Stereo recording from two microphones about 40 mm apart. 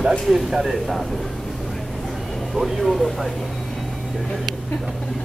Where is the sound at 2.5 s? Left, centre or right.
Centre.